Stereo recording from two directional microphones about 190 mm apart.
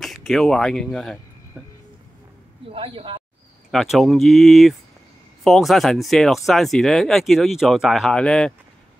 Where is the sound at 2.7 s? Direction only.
30° right (ahead or behind).